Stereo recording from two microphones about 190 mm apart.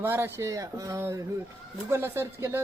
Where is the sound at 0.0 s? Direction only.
15° right (ahead or behind).